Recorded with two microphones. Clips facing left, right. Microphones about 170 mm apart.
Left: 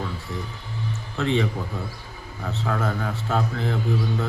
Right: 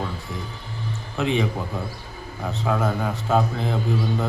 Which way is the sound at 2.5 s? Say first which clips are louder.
Right 3 dB; 15° right (ahead or behind).